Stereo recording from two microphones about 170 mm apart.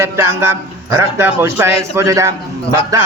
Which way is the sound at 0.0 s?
15° right (ahead or behind).